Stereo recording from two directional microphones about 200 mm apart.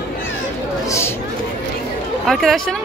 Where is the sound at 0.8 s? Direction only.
15° left (ahead or behind).